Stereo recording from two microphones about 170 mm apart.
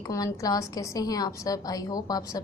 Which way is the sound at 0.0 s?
20° left (ahead or behind).